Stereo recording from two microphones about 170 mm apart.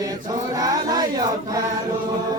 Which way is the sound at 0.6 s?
20° right (ahead or behind).